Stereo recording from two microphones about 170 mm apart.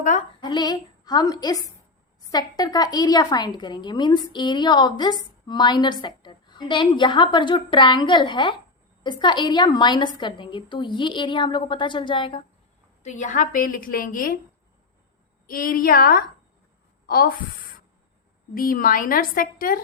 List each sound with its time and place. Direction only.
0.4 s a woman's voice: 25° left (ahead or behind)
13.0 s a woman's voice: 45° left (ahead or behind)
15.4 s a woman's voice: 55° left (ahead or behind)